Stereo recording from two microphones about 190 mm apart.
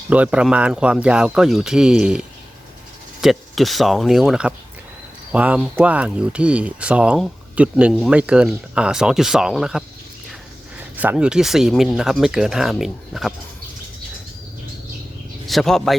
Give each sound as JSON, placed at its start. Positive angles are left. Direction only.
{"t": 0.1, "sound": "speech", "side_deg": -5}
{"t": 15.4, "sound": "speech", "side_deg": 0}